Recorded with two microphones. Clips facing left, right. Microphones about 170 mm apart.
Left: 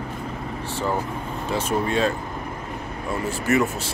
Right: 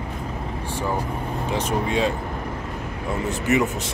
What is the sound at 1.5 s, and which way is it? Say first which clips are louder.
Speech: left 1 dB; 15° right (ahead or behind).